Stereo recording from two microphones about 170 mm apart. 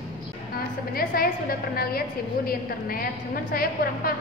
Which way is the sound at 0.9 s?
60° left (ahead or behind).